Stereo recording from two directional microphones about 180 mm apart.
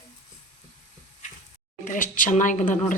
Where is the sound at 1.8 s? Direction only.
50° left (ahead or behind).